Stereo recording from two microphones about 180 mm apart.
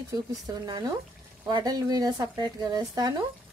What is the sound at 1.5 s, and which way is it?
Speech, 20° right (ahead or behind).